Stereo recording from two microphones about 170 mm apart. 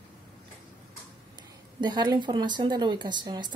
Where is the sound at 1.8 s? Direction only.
25° right (ahead or behind).